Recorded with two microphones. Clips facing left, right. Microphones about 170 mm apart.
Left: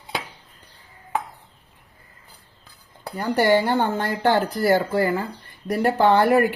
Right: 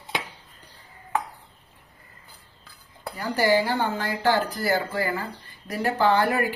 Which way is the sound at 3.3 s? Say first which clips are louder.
Left 3 dB; 55° left (ahead or behind).